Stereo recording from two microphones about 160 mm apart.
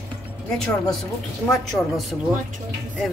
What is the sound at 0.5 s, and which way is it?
A woman's voice, 5° left (ahead or behind).